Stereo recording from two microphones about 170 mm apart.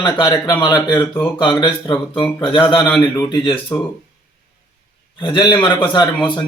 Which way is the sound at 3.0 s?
15° left (ahead or behind).